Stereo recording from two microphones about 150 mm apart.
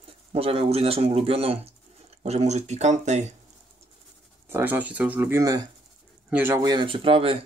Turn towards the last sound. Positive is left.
turn(degrees=-35)  # may be behind; listen again after turning